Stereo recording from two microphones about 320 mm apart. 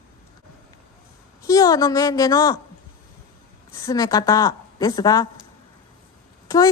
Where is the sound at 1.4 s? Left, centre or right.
Centre.